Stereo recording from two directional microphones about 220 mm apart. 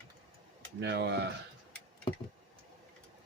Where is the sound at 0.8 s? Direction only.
50° right (ahead or behind).